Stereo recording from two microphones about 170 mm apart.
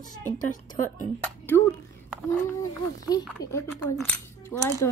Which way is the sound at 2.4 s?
20° left (ahead or behind).